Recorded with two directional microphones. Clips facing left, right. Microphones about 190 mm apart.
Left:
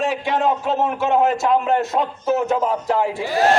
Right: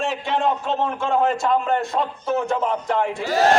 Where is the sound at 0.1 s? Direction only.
5° left (ahead or behind).